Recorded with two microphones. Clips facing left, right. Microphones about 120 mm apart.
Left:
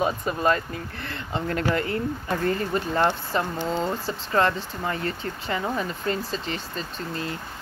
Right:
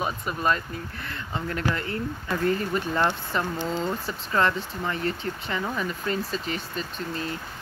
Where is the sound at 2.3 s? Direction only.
35° left (ahead or behind).